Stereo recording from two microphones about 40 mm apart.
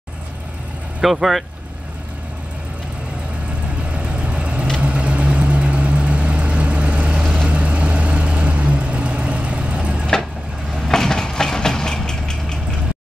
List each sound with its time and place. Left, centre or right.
1.0 s speech: centre
3.9 s vehicle: right
10.9 s vehicle: centre